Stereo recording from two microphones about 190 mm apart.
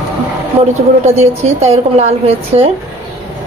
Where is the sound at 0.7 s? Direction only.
35° right (ahead or behind).